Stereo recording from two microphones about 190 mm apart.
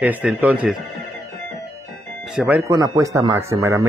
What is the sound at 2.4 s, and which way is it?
Speech, 10° right (ahead or behind).